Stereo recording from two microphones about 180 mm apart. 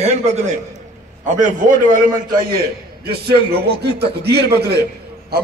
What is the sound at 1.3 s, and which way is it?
A man's voice, 50° right (ahead or behind).